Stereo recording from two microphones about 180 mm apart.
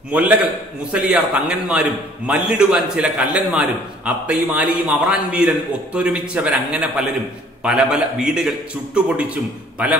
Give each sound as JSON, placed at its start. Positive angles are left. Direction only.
{"t": 0.1, "sound": "a man's voice", "side_deg": -10}